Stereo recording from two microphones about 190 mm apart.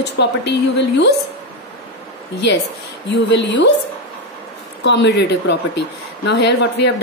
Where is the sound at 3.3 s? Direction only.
70° left (ahead or behind).